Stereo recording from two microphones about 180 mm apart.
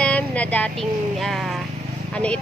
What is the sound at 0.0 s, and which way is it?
A woman's voice, 5° left (ahead or behind).